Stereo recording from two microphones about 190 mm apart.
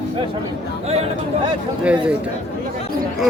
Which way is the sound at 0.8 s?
35° right (ahead or behind).